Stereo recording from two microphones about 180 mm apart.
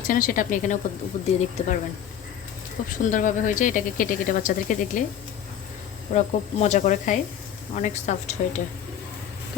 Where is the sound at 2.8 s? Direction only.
50° left (ahead or behind).